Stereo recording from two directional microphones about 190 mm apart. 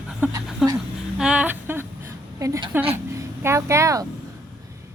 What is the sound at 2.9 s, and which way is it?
Speech, 15° right (ahead or behind).